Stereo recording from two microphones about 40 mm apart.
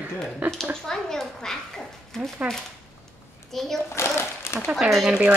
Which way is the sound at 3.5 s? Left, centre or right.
Centre.